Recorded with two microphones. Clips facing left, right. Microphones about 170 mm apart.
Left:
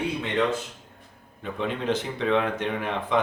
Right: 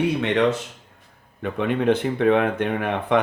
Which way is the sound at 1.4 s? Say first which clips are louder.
Right 7 dB; 60° right (ahead or behind).